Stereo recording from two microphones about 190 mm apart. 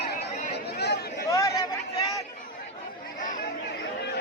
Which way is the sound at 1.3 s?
15° left (ahead or behind).